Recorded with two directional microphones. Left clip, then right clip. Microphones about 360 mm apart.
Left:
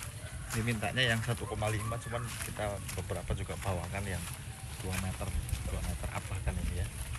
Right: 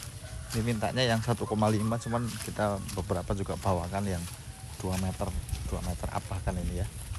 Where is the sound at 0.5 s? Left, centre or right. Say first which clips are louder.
Right 4 dB; centre.